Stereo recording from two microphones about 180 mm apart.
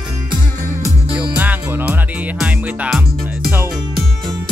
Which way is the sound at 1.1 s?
10° right (ahead or behind).